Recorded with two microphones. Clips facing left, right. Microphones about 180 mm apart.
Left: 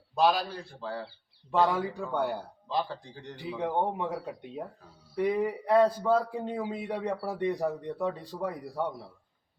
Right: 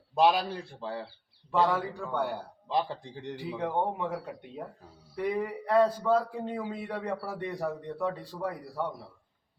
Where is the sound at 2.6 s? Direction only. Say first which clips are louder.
Right 2 dB; 25° right (ahead or behind).